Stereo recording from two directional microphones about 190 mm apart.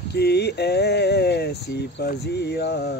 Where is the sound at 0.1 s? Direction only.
60° left (ahead or behind).